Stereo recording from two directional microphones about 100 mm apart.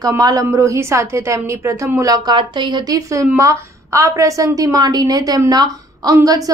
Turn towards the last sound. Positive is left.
turn(degrees=-35)  # may be behind; listen again after turning